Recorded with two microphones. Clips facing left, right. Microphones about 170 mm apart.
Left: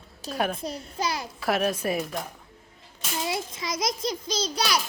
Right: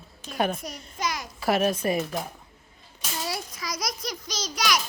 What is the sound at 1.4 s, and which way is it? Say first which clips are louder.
Speech: right 2 dB; centre (ahead or behind).